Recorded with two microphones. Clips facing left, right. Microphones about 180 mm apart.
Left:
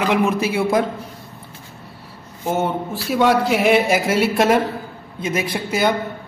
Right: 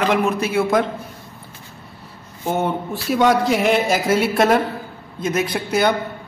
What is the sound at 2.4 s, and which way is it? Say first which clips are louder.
Speech: even; 5° left (ahead or behind).